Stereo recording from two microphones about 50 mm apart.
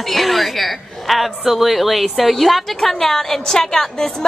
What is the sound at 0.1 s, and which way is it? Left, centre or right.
A woman's voice, centre.